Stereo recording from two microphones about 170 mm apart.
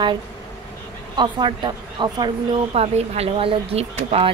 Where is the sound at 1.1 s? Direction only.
25° right (ahead or behind).